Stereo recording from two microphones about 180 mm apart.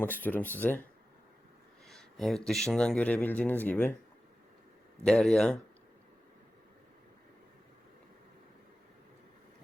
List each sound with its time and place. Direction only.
0.0 s speech: 10° left (ahead or behind)
1.9 s a sound: centre (ahead or behind)
2.5 s speech: centre (ahead or behind)
5.0 s speech: 5° left (ahead or behind)